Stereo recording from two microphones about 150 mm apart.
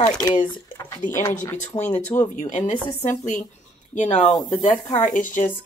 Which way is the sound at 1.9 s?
15° left (ahead or behind).